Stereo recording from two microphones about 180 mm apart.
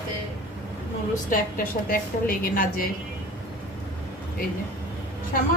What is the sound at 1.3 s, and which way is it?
A woman's voice, 50° left (ahead or behind).